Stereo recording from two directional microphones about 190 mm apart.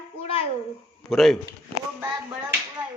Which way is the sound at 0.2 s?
30° left (ahead or behind).